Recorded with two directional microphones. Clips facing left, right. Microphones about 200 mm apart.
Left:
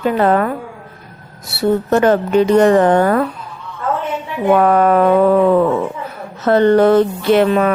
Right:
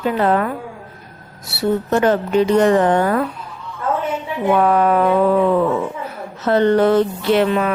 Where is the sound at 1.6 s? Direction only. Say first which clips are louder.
Left 3 dB; 50° left (ahead or behind).